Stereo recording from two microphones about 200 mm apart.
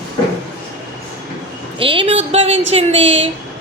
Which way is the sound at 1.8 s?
25° right (ahead or behind).